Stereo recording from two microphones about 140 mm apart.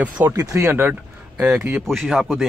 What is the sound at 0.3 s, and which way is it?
Speech, 20° right (ahead or behind).